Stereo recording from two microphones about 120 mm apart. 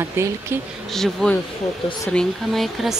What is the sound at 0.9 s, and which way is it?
Speech, 5° left (ahead or behind).